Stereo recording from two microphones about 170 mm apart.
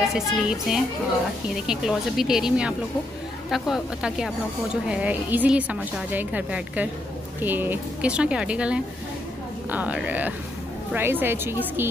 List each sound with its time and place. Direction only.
0.1 s a woman's voice: centre (ahead or behind)